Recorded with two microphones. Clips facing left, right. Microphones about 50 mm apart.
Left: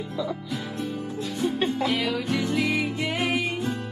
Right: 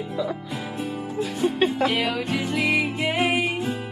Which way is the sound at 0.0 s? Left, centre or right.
Centre.